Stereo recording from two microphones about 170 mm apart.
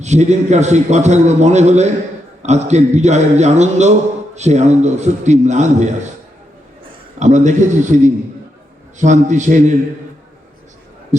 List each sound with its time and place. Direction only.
0.0 s a man's voice: 40° right (ahead or behind)
7.2 s a man's voice: 45° right (ahead or behind)
11.1 s a man's voice: 45° right (ahead or behind)